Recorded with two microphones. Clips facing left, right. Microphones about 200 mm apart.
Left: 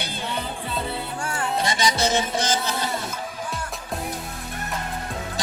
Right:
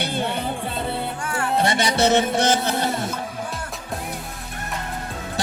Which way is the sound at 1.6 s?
60° right (ahead or behind).